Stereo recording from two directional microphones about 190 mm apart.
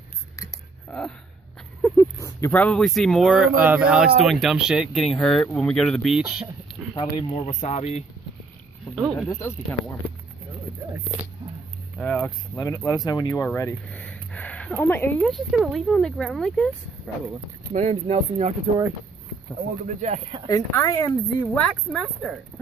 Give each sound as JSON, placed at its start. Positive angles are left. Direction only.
{"t": 0.8, "sound": "speech", "side_deg": 5}
{"t": 7.0, "sound": "speech", "side_deg": 30}
{"t": 8.9, "sound": "speech", "side_deg": 0}
{"t": 12.0, "sound": "speech", "side_deg": 5}
{"t": 12.5, "sound": "speech", "side_deg": 15}
{"t": 17.7, "sound": "speech", "side_deg": -35}
{"t": 20.0, "sound": "speech", "side_deg": -35}
{"t": 20.4, "sound": "speech", "side_deg": 15}
{"t": 21.5, "sound": "speech", "side_deg": 5}